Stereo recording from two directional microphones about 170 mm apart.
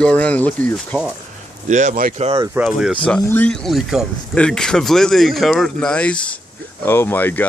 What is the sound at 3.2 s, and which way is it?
Speech, 10° left (ahead or behind).